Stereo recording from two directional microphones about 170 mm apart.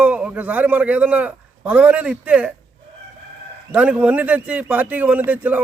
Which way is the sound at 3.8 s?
5° right (ahead or behind).